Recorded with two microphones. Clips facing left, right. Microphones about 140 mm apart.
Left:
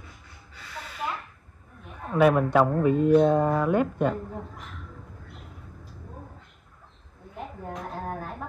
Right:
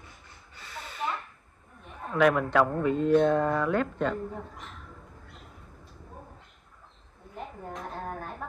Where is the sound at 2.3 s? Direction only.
20° left (ahead or behind).